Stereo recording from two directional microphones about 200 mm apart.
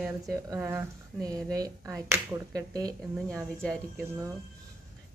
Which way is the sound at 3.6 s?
5° left (ahead or behind).